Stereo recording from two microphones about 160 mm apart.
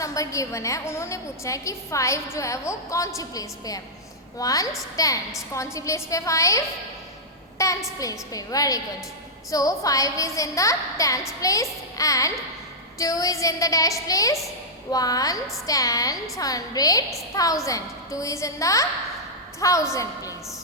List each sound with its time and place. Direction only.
0.0 s a woman's voice: 20° left (ahead or behind)
7.6 s a woman's voice: 20° left (ahead or behind)